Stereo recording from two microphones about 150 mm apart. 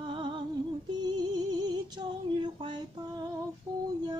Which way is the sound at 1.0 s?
25° right (ahead or behind).